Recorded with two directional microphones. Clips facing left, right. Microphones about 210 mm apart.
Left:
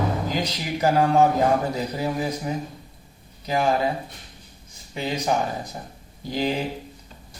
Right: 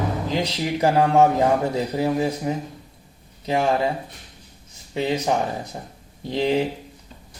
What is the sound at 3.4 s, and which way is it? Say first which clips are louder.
Speech: right 1 dB; 30° right (ahead or behind).